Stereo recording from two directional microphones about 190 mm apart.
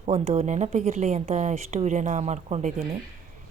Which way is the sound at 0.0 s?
35° right (ahead or behind).